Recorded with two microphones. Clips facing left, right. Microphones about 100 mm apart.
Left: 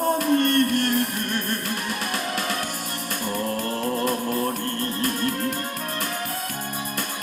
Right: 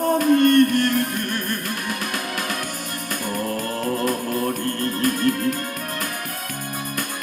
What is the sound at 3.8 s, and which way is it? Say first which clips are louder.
Music: right 2 dB; 25° left (ahead or behind).